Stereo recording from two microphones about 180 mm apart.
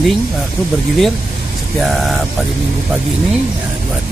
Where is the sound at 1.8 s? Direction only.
Centre (ahead or behind).